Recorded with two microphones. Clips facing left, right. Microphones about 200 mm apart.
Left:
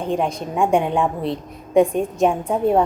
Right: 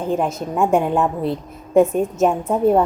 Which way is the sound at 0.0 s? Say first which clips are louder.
Right 1 dB; 5° right (ahead or behind).